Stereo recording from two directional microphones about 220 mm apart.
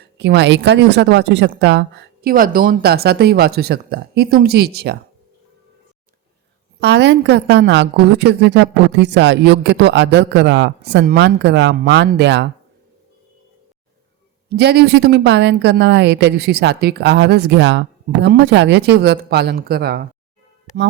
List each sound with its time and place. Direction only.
0.0 s a woman's voice: 50° right (ahead or behind)
6.7 s a woman's voice: 50° right (ahead or behind)
14.5 s a woman's voice: 50° right (ahead or behind)